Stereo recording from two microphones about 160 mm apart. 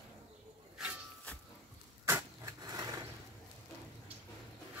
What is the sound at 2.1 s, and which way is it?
Vehicle, 20° right (ahead or behind).